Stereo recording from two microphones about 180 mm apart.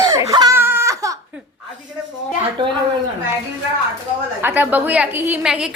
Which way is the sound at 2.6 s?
25° right (ahead or behind).